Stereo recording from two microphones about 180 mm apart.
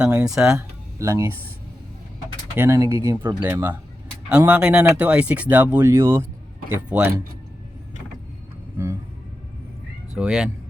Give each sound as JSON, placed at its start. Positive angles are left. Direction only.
{"t": 0.0, "sound": "speech", "side_deg": -10}
{"t": 0.9, "sound": "speech", "side_deg": -15}
{"t": 2.6, "sound": "speech", "side_deg": -15}
{"t": 8.8, "sound": "speech", "side_deg": -10}
{"t": 10.2, "sound": "speech", "side_deg": -5}